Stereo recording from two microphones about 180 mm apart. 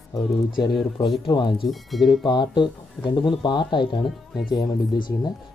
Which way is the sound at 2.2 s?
25° left (ahead or behind).